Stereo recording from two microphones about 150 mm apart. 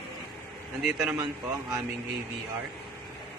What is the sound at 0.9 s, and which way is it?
Speech, 5° right (ahead or behind).